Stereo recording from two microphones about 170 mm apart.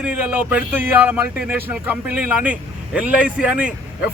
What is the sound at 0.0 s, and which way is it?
Speech, 10° right (ahead or behind).